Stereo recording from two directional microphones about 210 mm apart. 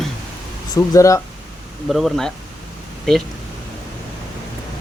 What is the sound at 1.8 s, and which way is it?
Speech, centre (ahead or behind).